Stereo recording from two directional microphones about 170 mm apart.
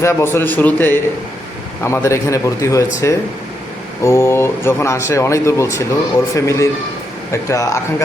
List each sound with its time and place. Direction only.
0.0 s speech: 15° left (ahead or behind)